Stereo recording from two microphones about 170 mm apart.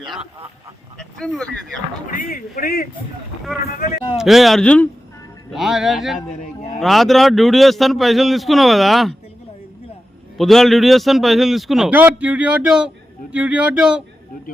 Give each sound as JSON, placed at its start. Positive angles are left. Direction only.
{"t": 0.9, "sound": "a man's voice", "side_deg": 0}
{"t": 2.0, "sound": "speech", "side_deg": 55}
{"t": 4.2, "sound": "a man's voice", "side_deg": 0}
{"t": 10.3, "sound": "a man's voice", "side_deg": 0}